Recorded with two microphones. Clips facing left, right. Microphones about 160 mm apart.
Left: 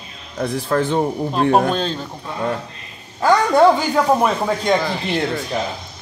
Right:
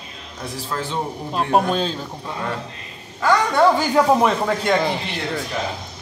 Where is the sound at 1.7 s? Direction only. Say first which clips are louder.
Left 1 dB; 5° right (ahead or behind).